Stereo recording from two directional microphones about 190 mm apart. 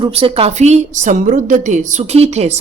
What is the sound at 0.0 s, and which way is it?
A woman's voice, 30° right (ahead or behind).